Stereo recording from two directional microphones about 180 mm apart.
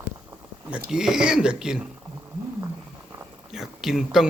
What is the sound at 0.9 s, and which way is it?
Speech, 5° right (ahead or behind).